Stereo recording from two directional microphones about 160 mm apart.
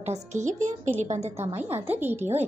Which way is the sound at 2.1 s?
40° right (ahead or behind).